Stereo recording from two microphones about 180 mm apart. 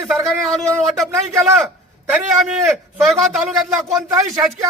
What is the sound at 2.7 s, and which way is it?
A man's voice, centre (ahead or behind).